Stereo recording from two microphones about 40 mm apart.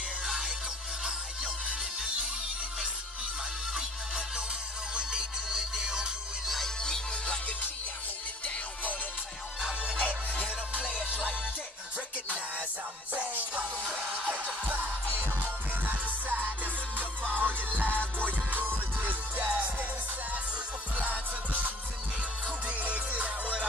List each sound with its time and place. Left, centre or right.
1.0 s music: right
4.9 s music: centre
6.8 s music: centre
9.6 s music: centre
10.4 s music: right
13.1 s music: right
15.1 s music: right
22.7 s music: right